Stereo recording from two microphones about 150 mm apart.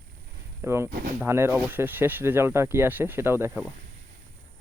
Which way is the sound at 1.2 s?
15° right (ahead or behind).